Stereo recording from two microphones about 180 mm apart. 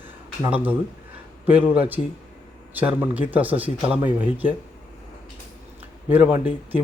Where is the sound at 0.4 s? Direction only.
10° right (ahead or behind).